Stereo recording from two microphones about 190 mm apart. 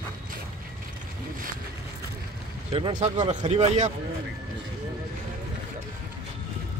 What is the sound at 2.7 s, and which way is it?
Speech, 25° right (ahead or behind).